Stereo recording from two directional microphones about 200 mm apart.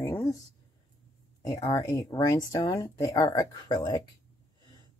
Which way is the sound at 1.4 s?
20° left (ahead or behind).